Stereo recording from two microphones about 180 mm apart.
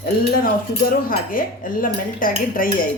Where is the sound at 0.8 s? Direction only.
55° left (ahead or behind).